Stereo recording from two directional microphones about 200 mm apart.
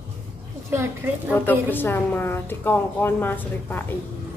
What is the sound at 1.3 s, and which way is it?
A woman's voice, 10° left (ahead or behind).